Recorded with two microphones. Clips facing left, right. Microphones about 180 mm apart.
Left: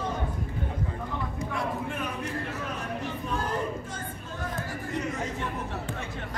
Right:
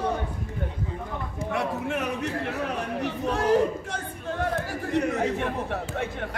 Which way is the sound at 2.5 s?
75° right (ahead or behind).